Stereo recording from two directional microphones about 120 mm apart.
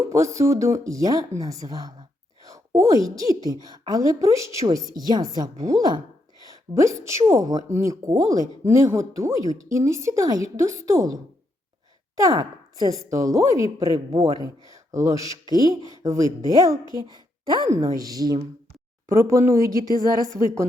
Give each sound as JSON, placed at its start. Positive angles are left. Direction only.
{"t": 0.1, "sound": "a woman's voice", "side_deg": -25}